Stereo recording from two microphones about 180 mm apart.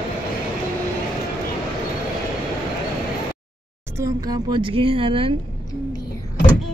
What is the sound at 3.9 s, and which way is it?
Speech, 20° right (ahead or behind).